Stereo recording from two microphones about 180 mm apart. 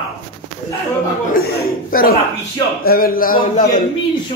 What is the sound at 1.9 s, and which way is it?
A man's voice, 55° left (ahead or behind).